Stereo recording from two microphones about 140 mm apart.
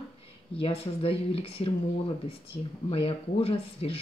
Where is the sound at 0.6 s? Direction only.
40° left (ahead or behind).